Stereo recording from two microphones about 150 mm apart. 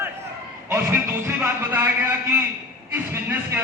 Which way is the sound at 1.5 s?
15° right (ahead or behind).